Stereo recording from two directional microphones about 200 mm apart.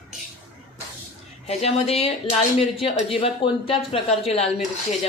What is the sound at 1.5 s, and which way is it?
Speech, 30° left (ahead or behind).